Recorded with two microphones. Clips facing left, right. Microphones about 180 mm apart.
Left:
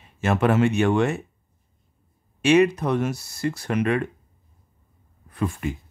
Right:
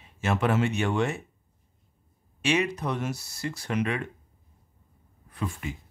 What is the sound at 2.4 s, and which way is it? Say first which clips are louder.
Speech: left 9 dB; 50° left (ahead or behind).